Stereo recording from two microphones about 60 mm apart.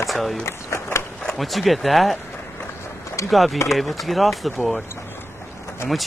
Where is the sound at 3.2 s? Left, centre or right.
Centre.